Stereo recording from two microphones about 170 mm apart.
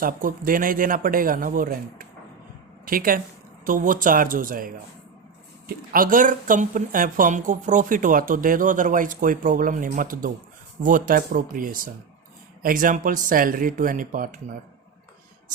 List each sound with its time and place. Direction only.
0.0 s speech: 55° right (ahead or behind)